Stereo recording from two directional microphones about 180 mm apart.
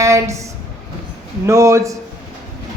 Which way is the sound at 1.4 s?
15° right (ahead or behind).